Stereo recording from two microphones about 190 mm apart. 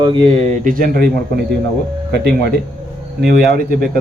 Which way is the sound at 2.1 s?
60° right (ahead or behind).